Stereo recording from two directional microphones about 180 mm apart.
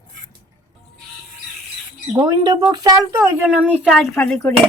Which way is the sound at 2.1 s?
20° right (ahead or behind).